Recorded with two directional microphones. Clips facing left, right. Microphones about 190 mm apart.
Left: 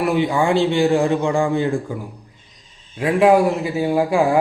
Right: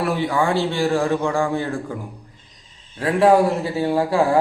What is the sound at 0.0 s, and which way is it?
A man's voice, 15° left (ahead or behind).